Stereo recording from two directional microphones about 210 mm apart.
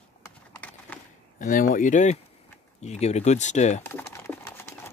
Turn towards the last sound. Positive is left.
turn(degrees=10)  # may be behind; listen again after turning